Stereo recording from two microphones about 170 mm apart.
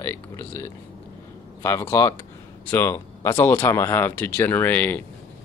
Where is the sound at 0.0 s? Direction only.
15° left (ahead or behind).